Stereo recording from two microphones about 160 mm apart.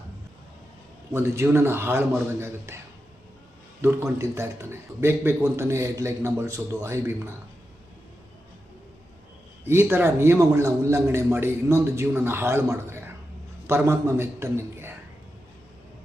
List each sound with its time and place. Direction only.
1.1 s a man's voice: 15° right (ahead or behind)
9.6 s a man's voice: 15° right (ahead or behind)